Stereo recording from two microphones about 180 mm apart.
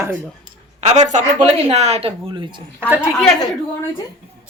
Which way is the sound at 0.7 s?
40° right (ahead or behind).